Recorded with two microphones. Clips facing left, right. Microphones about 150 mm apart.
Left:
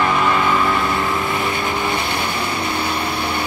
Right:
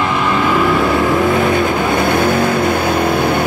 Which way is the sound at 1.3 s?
55° right (ahead or behind).